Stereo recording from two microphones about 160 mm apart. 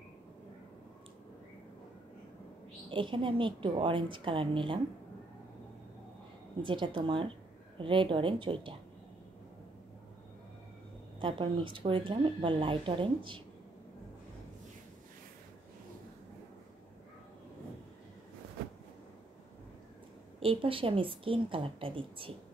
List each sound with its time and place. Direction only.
2.9 s speech: 30° right (ahead or behind)
6.6 s speech: 30° right (ahead or behind)
11.1 s speech: 35° right (ahead or behind)
20.3 s speech: 35° right (ahead or behind)